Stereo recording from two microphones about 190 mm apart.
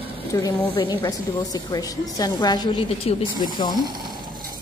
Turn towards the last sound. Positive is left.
turn(degrees=20)  # may be behind; listen again after turning